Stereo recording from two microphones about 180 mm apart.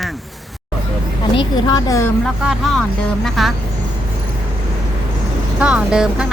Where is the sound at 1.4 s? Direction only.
20° left (ahead or behind).